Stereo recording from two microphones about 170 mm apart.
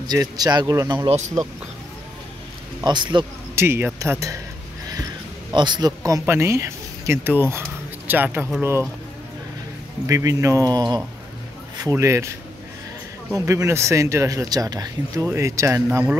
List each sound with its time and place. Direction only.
0.0 s speech: 25° right (ahead or behind)
2.8 s speech: 25° right (ahead or behind)
3.5 s speech: 15° right (ahead or behind)
5.5 s speech: 25° right (ahead or behind); by 8.6 s 5° right (ahead or behind)
10.0 s speech: 15° right (ahead or behind)
13.3 s speech: 15° right (ahead or behind)